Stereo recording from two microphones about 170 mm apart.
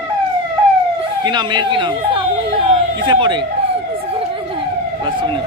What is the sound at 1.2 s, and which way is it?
Speech, 25° right (ahead or behind).